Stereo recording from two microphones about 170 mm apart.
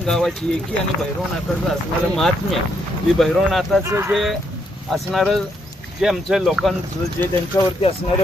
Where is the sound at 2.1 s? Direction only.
Centre (ahead or behind).